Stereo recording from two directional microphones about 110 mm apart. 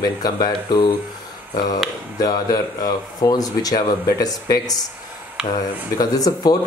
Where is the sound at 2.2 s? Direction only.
35° left (ahead or behind).